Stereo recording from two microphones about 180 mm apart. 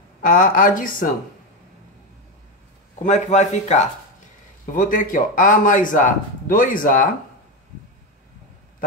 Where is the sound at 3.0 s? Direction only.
40° left (ahead or behind).